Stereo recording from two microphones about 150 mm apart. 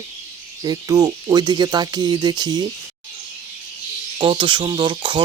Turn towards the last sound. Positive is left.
turn(degrees=-30)  # may be behind; listen again after turning